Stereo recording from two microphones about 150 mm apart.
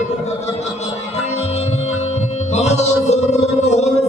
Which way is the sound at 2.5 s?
50° left (ahead or behind).